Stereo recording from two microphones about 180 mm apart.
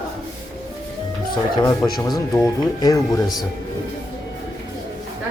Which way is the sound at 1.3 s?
25° left (ahead or behind).